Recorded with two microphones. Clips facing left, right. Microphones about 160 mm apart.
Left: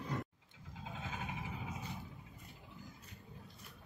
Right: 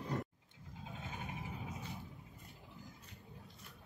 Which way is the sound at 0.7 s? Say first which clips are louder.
Left 2 dB; 90° left.